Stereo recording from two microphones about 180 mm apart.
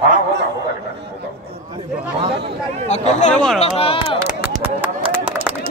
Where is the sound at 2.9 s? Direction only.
40° left (ahead or behind).